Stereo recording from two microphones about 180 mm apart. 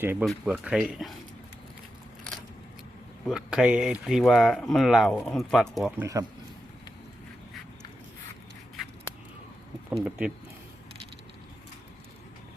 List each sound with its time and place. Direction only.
0.0 s speech: 10° right (ahead or behind)
3.2 s speech: 5° right (ahead or behind)
6.0 s speech: 20° right (ahead or behind)
9.9 s speech: 5° right (ahead or behind)